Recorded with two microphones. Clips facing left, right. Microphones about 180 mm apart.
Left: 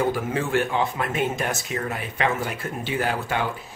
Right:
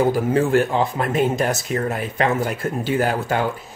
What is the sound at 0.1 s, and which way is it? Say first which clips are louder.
Speech: right 7 dB; 40° right (ahead or behind).